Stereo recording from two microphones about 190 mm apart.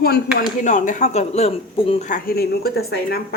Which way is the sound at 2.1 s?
55° left (ahead or behind).